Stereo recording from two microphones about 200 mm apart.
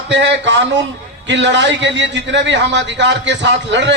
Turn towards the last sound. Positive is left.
turn(degrees=-65)  # may be behind; listen again after turning